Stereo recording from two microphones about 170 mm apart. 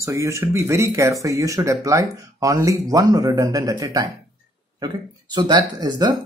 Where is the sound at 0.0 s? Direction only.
15° right (ahead or behind).